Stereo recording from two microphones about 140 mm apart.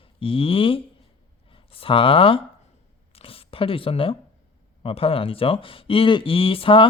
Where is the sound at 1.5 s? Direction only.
40° left (ahead or behind).